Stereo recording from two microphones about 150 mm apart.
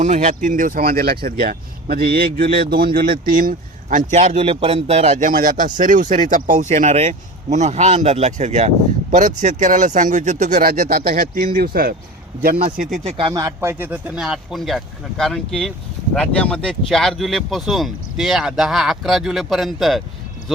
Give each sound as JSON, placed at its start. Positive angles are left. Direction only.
{"t": 0.0, "sound": "a man's voice", "side_deg": -55}
{"t": 13.1, "sound": "speech", "side_deg": -35}
{"t": 13.4, "sound": "speech", "side_deg": -20}
{"t": 14.2, "sound": "speech", "side_deg": 0}